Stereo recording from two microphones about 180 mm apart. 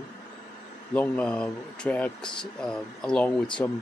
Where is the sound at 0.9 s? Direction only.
10° left (ahead or behind).